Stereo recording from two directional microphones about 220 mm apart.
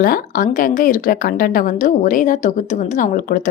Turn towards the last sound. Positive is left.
turn(degrees=35)  # may be behind; listen again after turning